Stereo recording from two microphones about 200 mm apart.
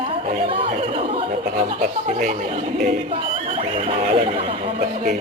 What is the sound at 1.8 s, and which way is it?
Speech, 45° right (ahead or behind).